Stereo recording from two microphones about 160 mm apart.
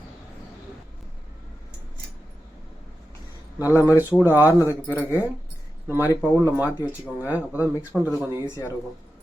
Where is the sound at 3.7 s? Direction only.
10° right (ahead or behind).